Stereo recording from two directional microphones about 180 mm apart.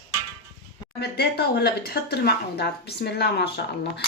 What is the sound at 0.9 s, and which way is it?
Speech, 65° left (ahead or behind).